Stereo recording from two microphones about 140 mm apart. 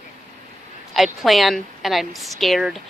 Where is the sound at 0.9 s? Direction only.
Centre (ahead or behind).